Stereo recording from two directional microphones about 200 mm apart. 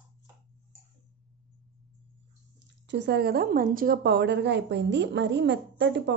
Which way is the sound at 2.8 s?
60° right (ahead or behind).